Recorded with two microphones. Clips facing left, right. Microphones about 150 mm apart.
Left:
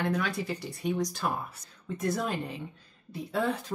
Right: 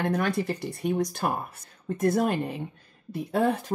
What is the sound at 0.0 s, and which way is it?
Speech, 55° right (ahead or behind).